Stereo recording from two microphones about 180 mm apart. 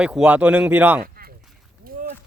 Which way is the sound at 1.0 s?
55° right (ahead or behind).